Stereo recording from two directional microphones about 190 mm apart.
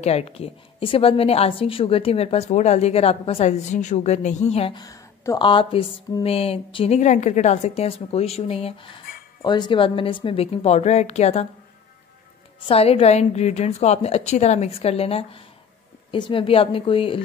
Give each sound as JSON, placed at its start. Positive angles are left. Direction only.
{"t": 0.0, "sound": "a woman's voice", "side_deg": 35}
{"t": 4.8, "sound": "a woman's voice", "side_deg": 20}
{"t": 12.6, "sound": "a woman's voice", "side_deg": 30}